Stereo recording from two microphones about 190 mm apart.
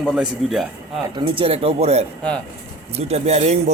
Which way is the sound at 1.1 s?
30° right (ahead or behind).